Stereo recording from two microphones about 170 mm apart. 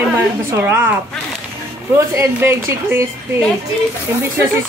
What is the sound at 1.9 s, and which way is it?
A woman's voice, 15° right (ahead or behind).